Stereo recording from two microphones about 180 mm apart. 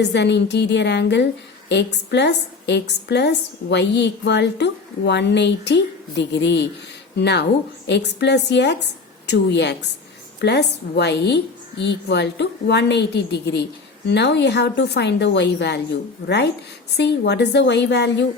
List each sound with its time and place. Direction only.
0.0 s a woman's voice: 70° left (ahead or behind)